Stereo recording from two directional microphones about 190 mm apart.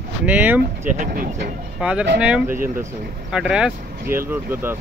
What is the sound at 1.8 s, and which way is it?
Speech, 5° right (ahead or behind).